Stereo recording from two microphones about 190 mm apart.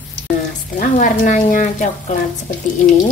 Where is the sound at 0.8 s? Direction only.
40° left (ahead or behind).